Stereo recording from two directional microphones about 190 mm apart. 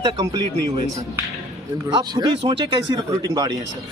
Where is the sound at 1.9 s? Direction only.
20° right (ahead or behind).